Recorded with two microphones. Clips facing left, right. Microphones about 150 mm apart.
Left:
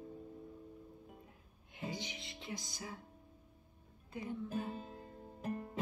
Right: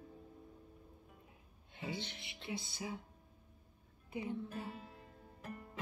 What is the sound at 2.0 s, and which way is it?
Music, 15° left (ahead or behind).